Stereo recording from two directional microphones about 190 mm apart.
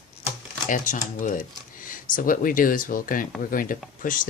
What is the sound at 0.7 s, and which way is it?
Speech, 45° left (ahead or behind).